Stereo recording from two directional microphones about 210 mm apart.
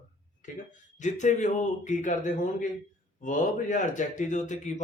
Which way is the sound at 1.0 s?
35° left (ahead or behind).